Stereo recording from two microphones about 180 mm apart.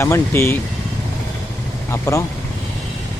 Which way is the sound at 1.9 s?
20° left (ahead or behind).